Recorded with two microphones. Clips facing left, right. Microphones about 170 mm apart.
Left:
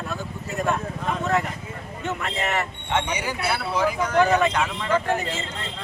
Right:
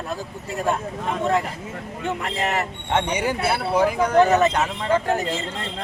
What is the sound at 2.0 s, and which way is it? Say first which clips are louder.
Speech: right 2 dB; 35° right (ahead or behind).